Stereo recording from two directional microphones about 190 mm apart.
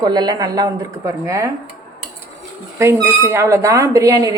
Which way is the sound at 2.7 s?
15° right (ahead or behind).